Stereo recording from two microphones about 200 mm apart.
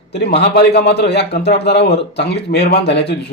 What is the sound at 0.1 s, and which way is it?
Speech, 55° left (ahead or behind).